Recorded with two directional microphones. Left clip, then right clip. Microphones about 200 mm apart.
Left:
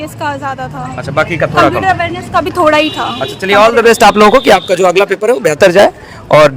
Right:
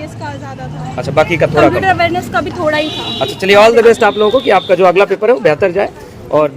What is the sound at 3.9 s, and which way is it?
Speech, 60° left (ahead or behind).